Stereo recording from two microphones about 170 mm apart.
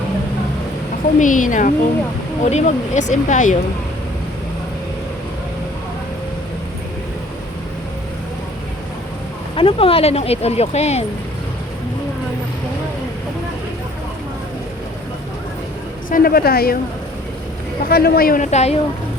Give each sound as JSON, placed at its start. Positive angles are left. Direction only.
{"t": 1.2, "sound": "speech", "side_deg": 50}
{"t": 9.6, "sound": "speech", "side_deg": 35}
{"t": 16.0, "sound": "a woman's voice", "side_deg": 55}
{"t": 17.8, "sound": "a woman's voice", "side_deg": 65}
{"t": 18.5, "sound": "speech", "side_deg": 40}